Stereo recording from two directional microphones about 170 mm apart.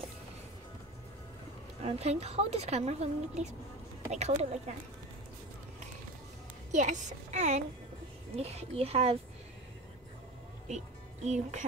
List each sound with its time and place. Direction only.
1.8 s a woman's voice: 35° right (ahead or behind)
6.7 s a woman's voice: 45° right (ahead or behind)
11.2 s a woman's voice: 45° right (ahead or behind)